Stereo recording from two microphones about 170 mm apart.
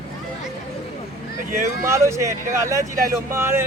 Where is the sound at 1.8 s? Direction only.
15° right (ahead or behind).